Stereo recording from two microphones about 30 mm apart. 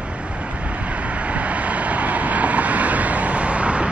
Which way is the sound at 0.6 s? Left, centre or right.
Right.